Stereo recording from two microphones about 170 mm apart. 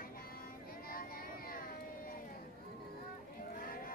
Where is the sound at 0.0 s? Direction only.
60° left (ahead or behind).